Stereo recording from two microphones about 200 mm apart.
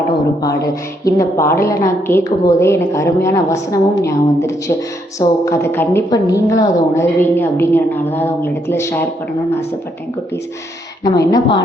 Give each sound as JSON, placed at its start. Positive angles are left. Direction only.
{"t": 0.4, "sound": "a woman's voice", "side_deg": 15}
{"t": 11.0, "sound": "speech", "side_deg": 20}